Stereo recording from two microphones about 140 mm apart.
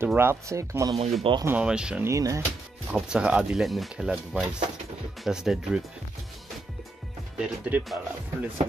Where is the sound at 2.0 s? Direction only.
20° right (ahead or behind).